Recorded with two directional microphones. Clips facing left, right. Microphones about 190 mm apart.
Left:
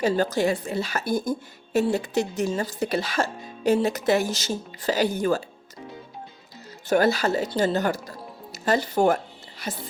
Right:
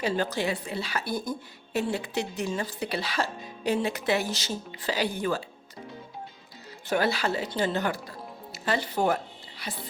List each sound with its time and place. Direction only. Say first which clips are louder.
0.0 s a woman's voice: left 6 dB; 45° left (ahead or behind)
6.8 s a woman's voice: left 5 dB; 45° left (ahead or behind)